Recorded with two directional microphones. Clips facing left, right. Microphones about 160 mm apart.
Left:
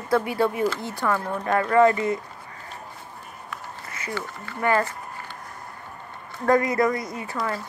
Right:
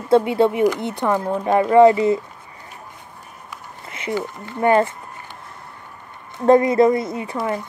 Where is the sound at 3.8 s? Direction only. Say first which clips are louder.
Right 9 dB; 25° right (ahead or behind).